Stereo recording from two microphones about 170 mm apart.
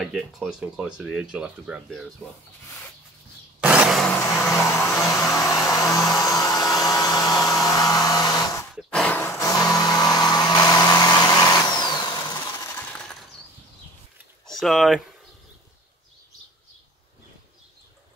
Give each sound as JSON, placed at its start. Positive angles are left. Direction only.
{"t": 0.1, "sound": "speech", "side_deg": 0}
{"t": 2.2, "sound": "speech", "side_deg": 10}
{"t": 3.6, "sound": "a sound", "side_deg": -5}
{"t": 4.6, "sound": "hair dryer", "side_deg": 15}
{"t": 8.7, "sound": "a sound", "side_deg": 5}
{"t": 14.4, "sound": "speech", "side_deg": 0}